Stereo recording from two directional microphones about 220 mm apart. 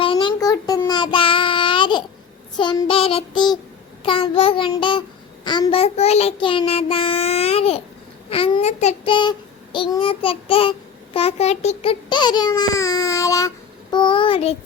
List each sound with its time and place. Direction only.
0.0 s child singing: 25° left (ahead or behind)
2.6 s a child's voice: 20° left (ahead or behind)